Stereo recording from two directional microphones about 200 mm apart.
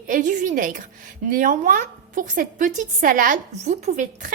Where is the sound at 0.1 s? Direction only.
40° right (ahead or behind).